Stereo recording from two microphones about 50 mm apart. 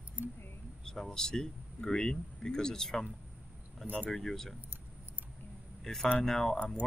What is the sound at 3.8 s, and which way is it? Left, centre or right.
Speech, right.